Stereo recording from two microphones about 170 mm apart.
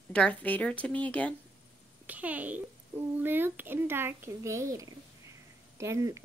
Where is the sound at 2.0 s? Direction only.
10° right (ahead or behind).